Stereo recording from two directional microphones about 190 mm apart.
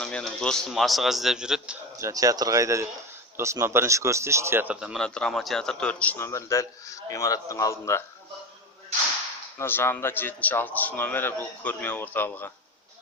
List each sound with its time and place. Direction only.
0.0 s speech: 5° left (ahead or behind)
2.0 s speech: 15° right (ahead or behind); by 8.0 s 15° left (ahead or behind)
9.6 s speech: 10° left (ahead or behind)